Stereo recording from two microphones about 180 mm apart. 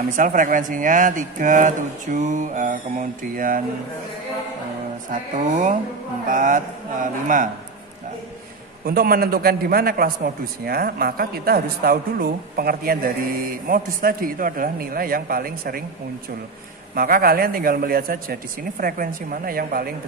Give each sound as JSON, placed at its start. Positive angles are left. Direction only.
{"t": 0.1, "sound": "speech", "side_deg": -50}
{"t": 5.1, "sound": "speech", "side_deg": -45}
{"t": 8.8, "sound": "a man's voice", "side_deg": -55}
{"t": 16.9, "sound": "speech", "side_deg": -55}